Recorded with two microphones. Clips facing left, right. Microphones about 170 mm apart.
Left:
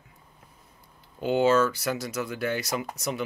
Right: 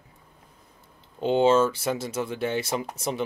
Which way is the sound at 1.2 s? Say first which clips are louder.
Right 2 dB; 25° right (ahead or behind).